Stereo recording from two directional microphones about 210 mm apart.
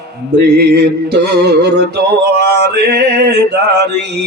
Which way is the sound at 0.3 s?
50° right (ahead or behind).